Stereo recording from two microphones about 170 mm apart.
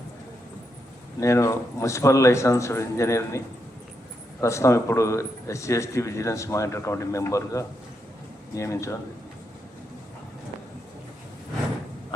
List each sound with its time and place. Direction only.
1.2 s a man's voice: 20° left (ahead or behind)